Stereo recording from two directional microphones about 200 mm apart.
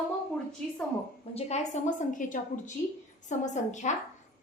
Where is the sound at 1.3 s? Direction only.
30° left (ahead or behind).